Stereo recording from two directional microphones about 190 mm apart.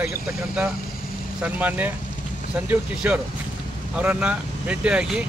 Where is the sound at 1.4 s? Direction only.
10° right (ahead or behind).